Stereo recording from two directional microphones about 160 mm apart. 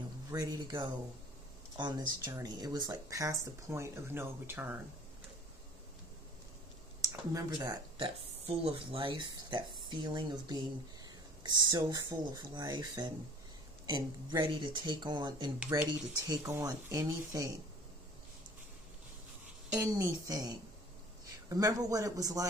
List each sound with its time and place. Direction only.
0.3 s speech: 25° right (ahead or behind)
7.1 s speech: 25° right (ahead or behind)
19.8 s speech: 20° right (ahead or behind)